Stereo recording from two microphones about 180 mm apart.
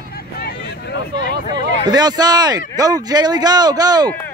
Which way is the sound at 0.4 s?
60° left (ahead or behind).